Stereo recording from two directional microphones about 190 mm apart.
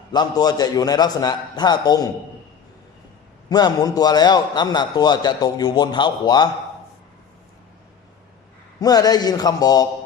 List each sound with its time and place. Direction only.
0.1 s a man's voice: 20° left (ahead or behind)
3.5 s a man's voice: 20° left (ahead or behind)
8.8 s a man's voice: 20° left (ahead or behind)